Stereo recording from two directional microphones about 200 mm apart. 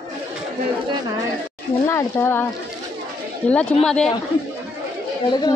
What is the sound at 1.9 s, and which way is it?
Speech, 15° left (ahead or behind).